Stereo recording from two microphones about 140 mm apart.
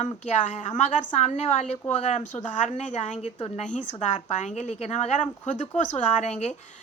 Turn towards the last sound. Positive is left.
turn(degrees=55)  # may be behind; listen again after turning